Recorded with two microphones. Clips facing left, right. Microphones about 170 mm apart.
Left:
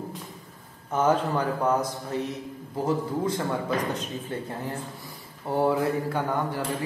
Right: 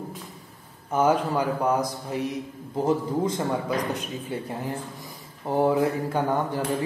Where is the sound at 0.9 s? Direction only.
10° right (ahead or behind).